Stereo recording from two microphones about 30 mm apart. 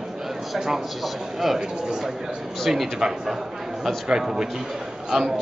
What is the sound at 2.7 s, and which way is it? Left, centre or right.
Speech, centre.